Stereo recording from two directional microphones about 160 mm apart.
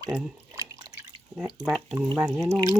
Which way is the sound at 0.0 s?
20° right (ahead or behind).